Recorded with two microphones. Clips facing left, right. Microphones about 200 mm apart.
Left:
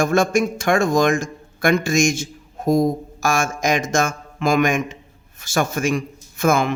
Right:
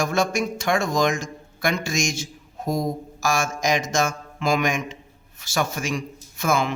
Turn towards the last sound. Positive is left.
turn(degrees=50)  # may be behind; listen again after turning